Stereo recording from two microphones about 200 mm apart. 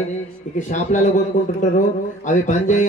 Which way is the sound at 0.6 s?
40° left (ahead or behind).